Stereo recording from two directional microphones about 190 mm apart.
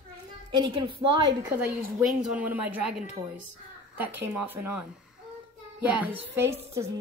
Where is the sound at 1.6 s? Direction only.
10° right (ahead or behind).